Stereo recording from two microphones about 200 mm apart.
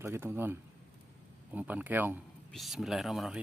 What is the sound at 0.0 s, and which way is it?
Speech, 10° right (ahead or behind).